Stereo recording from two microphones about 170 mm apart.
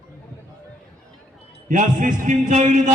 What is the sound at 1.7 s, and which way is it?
A man's voice, 50° right (ahead or behind).